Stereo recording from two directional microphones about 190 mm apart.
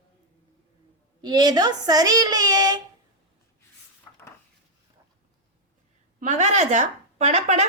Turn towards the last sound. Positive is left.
turn(degrees=-35)  # may be behind; listen again after turning